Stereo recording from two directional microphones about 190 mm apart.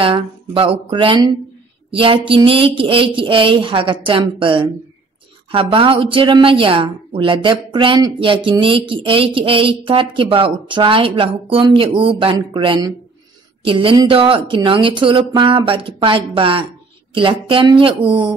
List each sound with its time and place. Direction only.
0.0 s a woman's voice: 30° right (ahead or behind)